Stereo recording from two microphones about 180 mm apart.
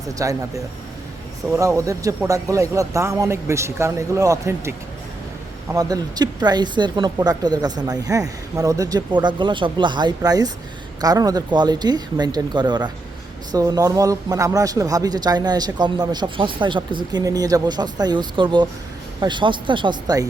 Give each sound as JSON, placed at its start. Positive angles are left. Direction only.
{"t": 0.2, "sound": "speech", "side_deg": -20}
{"t": 5.7, "sound": "speech", "side_deg": -20}